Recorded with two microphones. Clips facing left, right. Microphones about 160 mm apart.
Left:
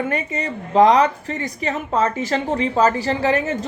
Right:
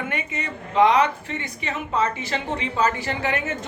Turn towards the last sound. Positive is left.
turn(degrees=35)  # may be behind; listen again after turning